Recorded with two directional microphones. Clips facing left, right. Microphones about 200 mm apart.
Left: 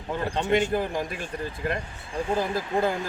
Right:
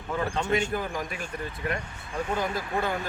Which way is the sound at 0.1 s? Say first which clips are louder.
Left 2 dB; 35° left (ahead or behind).